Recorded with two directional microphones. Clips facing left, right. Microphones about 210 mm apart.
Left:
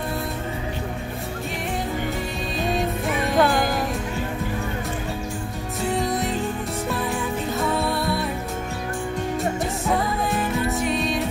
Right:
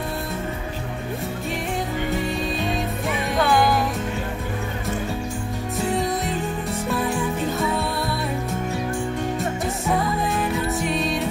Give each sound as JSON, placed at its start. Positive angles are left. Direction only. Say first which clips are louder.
{"t": 3.3, "sound": "music", "louder": "right 1 dB", "side_deg": 45}
{"t": 5.9, "sound": "music", "louder": "even", "side_deg": 0}
{"t": 7.5, "sound": "music", "louder": "left 1 dB", "side_deg": 0}
{"t": 10.3, "sound": "music", "louder": "even", "side_deg": 0}